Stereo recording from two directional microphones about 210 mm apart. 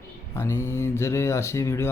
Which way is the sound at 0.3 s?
15° left (ahead or behind).